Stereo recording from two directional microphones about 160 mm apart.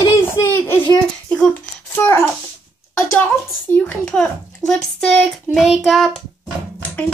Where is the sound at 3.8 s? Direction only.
5° left (ahead or behind).